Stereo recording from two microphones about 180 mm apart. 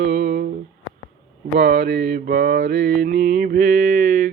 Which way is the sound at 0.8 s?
90° left.